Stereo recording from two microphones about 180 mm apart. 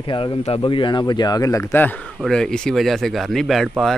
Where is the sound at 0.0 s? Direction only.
25° left (ahead or behind).